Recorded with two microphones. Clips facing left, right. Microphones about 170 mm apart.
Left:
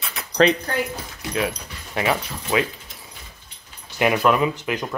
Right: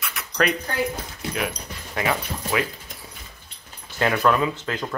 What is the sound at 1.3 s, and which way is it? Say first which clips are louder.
Speech: left 5 dB; 25° left (ahead or behind).